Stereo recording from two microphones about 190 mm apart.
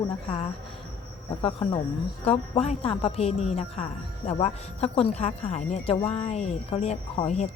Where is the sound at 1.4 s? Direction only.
30° left (ahead or behind).